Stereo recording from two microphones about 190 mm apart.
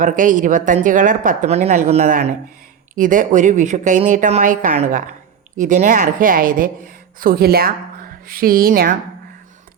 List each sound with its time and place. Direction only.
0.0 s speech: 40° right (ahead or behind)